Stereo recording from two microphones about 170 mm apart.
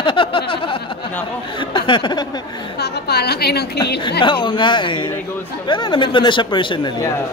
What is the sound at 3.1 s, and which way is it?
Speech, 70° left (ahead or behind).